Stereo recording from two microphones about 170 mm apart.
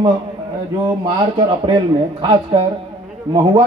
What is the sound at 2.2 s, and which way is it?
Speech, 30° right (ahead or behind).